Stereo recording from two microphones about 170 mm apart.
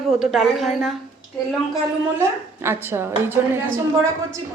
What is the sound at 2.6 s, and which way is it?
Speech, 15° right (ahead or behind).